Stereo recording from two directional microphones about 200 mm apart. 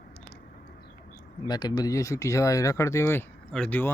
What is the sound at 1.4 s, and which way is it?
Speech, 20° left (ahead or behind).